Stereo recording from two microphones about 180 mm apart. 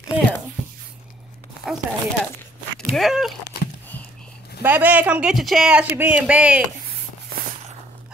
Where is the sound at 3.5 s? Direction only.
60° left (ahead or behind).